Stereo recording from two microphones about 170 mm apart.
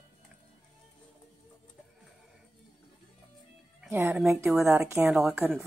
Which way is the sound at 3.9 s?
15° right (ahead or behind).